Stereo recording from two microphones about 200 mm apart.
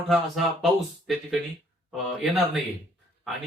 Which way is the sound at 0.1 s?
Centre (ahead or behind).